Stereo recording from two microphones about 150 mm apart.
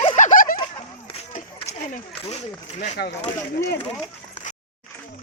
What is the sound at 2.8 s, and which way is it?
Speech, 90° left.